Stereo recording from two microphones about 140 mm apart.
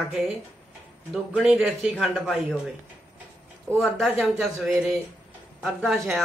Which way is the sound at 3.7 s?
20° right (ahead or behind).